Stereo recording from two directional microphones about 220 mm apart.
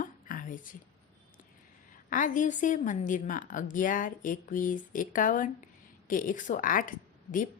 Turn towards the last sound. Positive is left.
turn(degrees=35)  # may be behind; listen again after turning